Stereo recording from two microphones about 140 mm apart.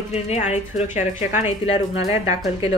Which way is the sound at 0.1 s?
50° left (ahead or behind).